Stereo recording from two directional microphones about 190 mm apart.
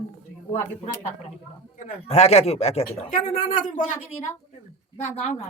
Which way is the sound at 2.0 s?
35° left (ahead or behind).